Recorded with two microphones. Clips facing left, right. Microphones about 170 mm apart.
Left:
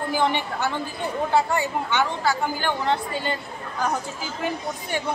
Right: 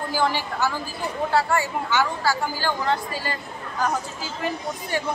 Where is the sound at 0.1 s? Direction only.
20° left (ahead or behind).